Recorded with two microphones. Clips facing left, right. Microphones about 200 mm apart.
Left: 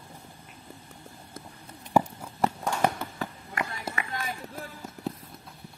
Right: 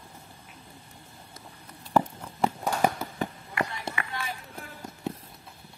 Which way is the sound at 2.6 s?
5° right (ahead or behind).